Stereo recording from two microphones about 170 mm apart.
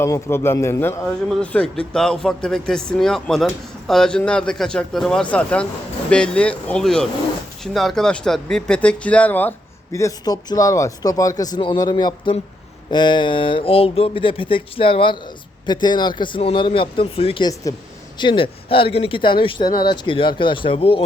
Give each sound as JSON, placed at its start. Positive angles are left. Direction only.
{"t": 0.0, "sound": "speech", "side_deg": 15}
{"t": 17.5, "sound": "speech", "side_deg": 20}
{"t": 18.2, "sound": "speech", "side_deg": 30}